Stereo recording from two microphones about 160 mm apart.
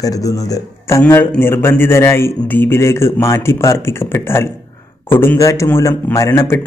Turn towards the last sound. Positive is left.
turn(degrees=15)  # may be behind; listen again after turning